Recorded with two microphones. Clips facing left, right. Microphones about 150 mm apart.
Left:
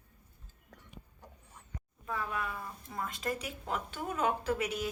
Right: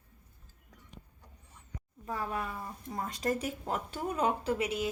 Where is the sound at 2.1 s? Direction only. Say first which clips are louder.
Right 1 dB; 35° right (ahead or behind).